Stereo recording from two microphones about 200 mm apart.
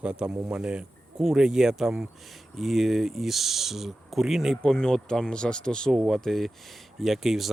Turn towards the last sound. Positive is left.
turn(degrees=0)  # may be behind; listen again after turning